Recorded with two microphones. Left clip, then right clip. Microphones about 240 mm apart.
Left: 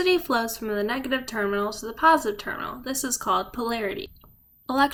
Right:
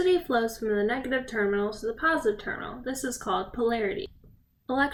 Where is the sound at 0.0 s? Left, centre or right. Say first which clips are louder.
Left 2 dB; centre.